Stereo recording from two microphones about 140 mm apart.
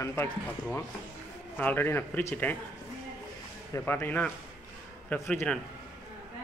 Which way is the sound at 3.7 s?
20° left (ahead or behind).